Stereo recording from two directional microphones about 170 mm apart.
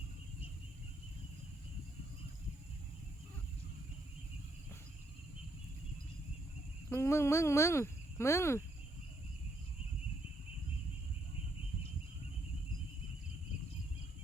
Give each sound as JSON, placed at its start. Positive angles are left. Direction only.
{"t": 6.9, "sound": "speech", "side_deg": 15}